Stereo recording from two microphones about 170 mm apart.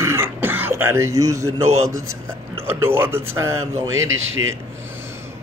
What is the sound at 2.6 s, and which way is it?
Speech, 15° right (ahead or behind).